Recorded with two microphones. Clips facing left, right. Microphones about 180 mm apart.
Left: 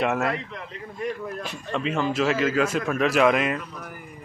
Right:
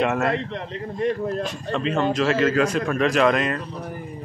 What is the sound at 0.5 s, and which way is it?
Speech, 35° right (ahead or behind).